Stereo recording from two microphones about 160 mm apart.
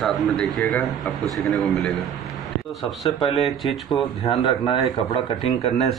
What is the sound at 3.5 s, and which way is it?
Speech, centre (ahead or behind).